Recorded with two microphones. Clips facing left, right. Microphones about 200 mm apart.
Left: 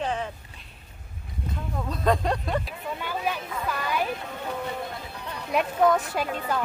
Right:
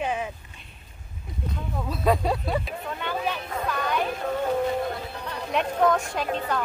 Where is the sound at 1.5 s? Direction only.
5° right (ahead or behind).